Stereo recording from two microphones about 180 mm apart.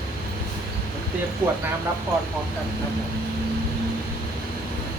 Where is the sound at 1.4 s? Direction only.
10° right (ahead or behind).